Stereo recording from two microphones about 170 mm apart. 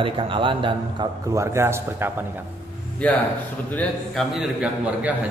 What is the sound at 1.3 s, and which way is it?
Speech, 15° right (ahead or behind).